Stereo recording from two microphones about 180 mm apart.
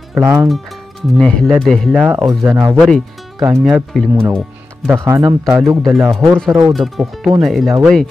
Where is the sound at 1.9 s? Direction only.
10° right (ahead or behind).